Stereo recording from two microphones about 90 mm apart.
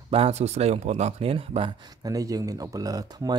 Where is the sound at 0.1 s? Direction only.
90° right.